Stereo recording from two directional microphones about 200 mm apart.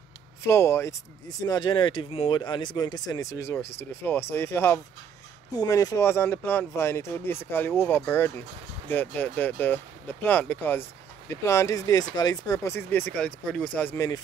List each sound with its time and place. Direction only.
0.5 s speech: 10° left (ahead or behind)